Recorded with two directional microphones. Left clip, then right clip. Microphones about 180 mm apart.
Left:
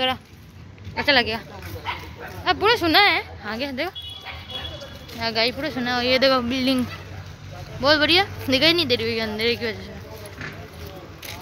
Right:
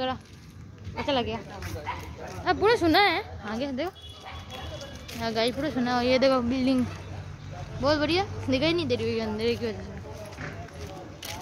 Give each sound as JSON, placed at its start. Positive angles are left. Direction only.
{"t": 1.0, "sound": "speech", "side_deg": 5}
{"t": 2.4, "sound": "speech", "side_deg": -20}
{"t": 5.2, "sound": "speech", "side_deg": -15}
{"t": 7.8, "sound": "speech", "side_deg": 0}